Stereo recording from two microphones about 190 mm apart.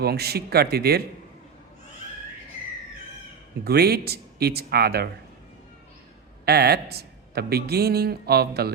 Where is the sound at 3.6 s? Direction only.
55° right (ahead or behind).